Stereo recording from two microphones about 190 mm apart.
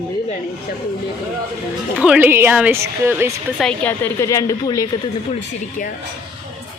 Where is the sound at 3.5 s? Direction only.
5° left (ahead or behind).